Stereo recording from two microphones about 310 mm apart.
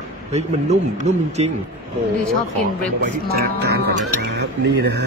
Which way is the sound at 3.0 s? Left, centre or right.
Right.